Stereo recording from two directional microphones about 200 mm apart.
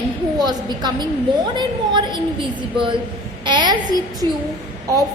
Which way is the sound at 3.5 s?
20° right (ahead or behind).